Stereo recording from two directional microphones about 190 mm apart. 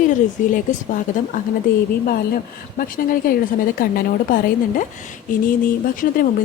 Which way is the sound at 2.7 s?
45° left (ahead or behind).